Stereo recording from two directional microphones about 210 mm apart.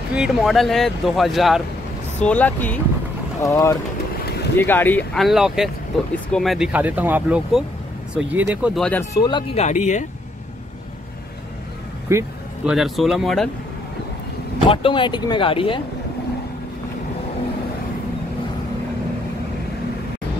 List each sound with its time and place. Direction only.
0.1 s speech: centre (ahead or behind)
9.2 s speech: 25° left (ahead or behind)
12.1 s vehicle: 15° right (ahead or behind)
12.7 s speech: centre (ahead or behind)
14.7 s speech: 25° left (ahead or behind)